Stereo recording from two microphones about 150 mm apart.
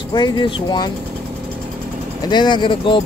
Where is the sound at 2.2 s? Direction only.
30° left (ahead or behind).